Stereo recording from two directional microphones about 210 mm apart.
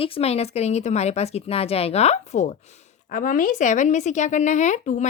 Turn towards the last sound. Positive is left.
turn(degrees=35)  # may be behind; listen again after turning